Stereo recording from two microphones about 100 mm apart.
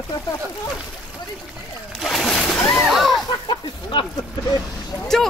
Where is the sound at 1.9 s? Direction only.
Centre (ahead or behind).